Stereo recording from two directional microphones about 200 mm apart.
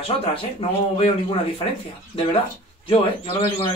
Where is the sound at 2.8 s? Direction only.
30° left (ahead or behind).